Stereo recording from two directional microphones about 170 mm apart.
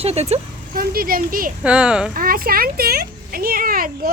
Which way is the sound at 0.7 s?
60° right (ahead or behind).